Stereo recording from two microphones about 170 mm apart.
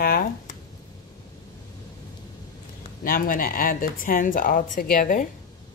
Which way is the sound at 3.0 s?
55° left (ahead or behind).